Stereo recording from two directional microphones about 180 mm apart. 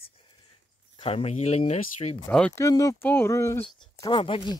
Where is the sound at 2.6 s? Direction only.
20° left (ahead or behind).